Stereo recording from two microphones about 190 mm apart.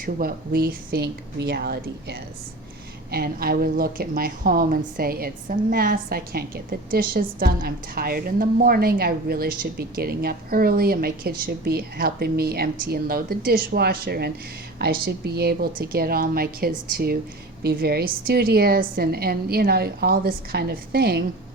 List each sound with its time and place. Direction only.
0.0 s a woman's voice: 50° right (ahead or behind)